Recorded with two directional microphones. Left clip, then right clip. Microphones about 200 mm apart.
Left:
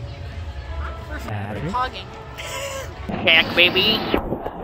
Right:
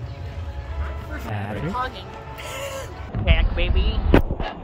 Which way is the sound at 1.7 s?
15° right (ahead or behind).